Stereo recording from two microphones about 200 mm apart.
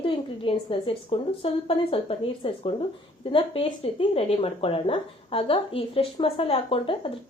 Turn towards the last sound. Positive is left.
turn(degrees=25)  # may be behind; listen again after turning